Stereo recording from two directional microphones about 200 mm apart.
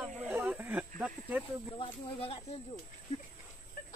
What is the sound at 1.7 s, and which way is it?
Speech, 25° left (ahead or behind).